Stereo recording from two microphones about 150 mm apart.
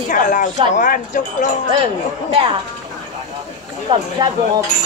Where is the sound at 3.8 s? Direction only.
25° right (ahead or behind).